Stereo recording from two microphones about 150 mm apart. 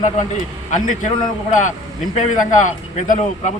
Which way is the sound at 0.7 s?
55° left (ahead or behind).